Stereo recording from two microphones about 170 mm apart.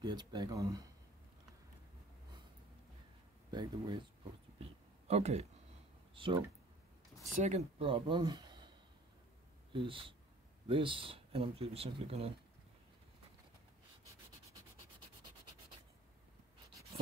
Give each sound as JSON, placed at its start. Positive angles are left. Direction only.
{"t": 0.0, "sound": "speech", "side_deg": -25}
{"t": 3.5, "sound": "speech", "side_deg": -25}
{"t": 4.6, "sound": "a sound", "side_deg": -40}
{"t": 6.1, "sound": "speech", "side_deg": -30}
{"t": 7.3, "sound": "speech", "side_deg": -40}